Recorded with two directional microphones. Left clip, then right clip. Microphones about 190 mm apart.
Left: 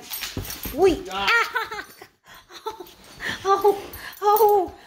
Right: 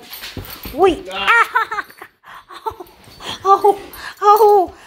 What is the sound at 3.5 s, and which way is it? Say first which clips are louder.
A child's voice: right 7 dB; 20° right (ahead or behind).